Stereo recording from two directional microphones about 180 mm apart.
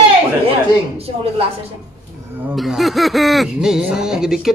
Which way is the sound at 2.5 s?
Centre (ahead or behind).